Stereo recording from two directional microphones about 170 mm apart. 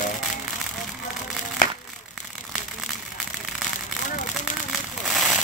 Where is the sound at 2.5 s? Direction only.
Centre (ahead or behind).